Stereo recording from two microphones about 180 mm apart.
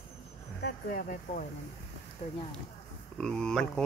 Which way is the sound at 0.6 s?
55° left (ahead or behind).